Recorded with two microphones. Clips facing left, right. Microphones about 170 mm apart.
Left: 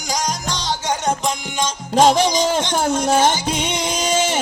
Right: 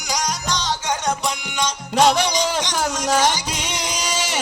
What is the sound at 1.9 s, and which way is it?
Music, 40° left (ahead or behind).